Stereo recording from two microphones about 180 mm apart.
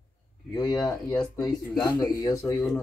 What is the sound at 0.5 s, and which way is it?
A man's voice, 20° left (ahead or behind).